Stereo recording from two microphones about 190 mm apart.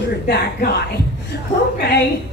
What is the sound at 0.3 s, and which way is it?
A woman's voice, 60° left (ahead or behind).